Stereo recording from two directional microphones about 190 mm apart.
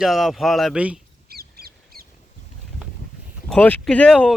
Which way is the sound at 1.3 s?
55° right (ahead or behind).